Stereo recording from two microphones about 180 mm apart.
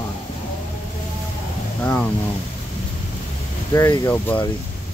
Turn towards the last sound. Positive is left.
turn(degrees=15)  # may be behind; listen again after turning